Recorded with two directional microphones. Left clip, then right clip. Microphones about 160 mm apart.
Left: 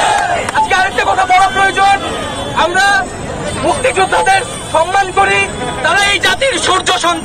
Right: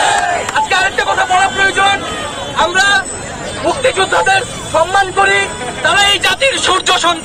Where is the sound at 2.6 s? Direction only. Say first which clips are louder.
Even; centre (ahead or behind).